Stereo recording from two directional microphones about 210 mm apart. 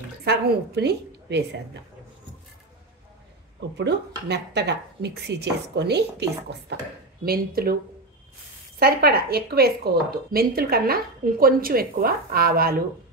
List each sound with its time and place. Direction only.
0.2 s a woman's voice: 50° right (ahead or behind)
3.7 s speech: 55° right (ahead or behind)
7.2 s speech: 45° right (ahead or behind)
8.7 s speech: 45° right (ahead or behind)